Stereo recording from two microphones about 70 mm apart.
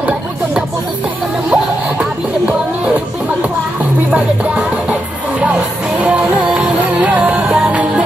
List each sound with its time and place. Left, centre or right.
1.5 s music: centre
4.1 s music: centre